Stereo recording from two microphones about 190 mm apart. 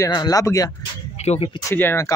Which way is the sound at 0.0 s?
20° left (ahead or behind).